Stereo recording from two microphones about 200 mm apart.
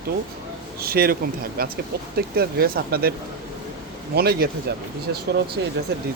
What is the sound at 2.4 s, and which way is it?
Speech, 50° right (ahead or behind).